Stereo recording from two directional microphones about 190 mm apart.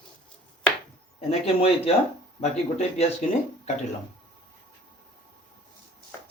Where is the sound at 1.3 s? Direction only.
30° left (ahead or behind).